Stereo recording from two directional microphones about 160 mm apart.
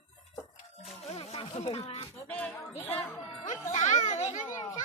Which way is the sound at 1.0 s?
40° left (ahead or behind).